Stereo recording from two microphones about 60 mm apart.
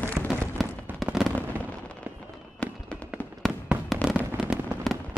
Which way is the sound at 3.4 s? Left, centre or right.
Centre.